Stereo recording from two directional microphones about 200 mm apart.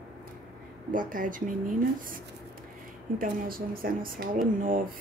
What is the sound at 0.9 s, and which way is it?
Speech, 40° right (ahead or behind).